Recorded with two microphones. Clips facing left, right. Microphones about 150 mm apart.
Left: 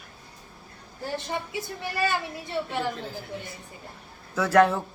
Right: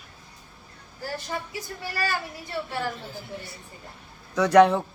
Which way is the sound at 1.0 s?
25° left (ahead or behind).